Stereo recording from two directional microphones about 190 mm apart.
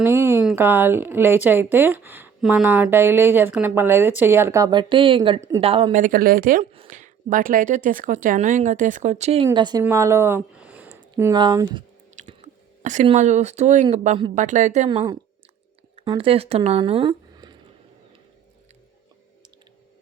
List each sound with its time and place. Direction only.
0.0 s a sound: 15° right (ahead or behind)
0.5 s speech: 10° right (ahead or behind); by 6.0 s 30° right (ahead or behind)
6.0 s speech: 50° right (ahead or behind); by 11.0 s 10° right (ahead or behind)
11.2 s speech: 20° right (ahead or behind)
12.2 s chewing: 40° right (ahead or behind)
12.8 s speech: 40° right (ahead or behind)
14.8 s speech: 25° right (ahead or behind)